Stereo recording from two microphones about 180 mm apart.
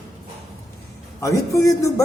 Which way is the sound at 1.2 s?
20° left (ahead or behind).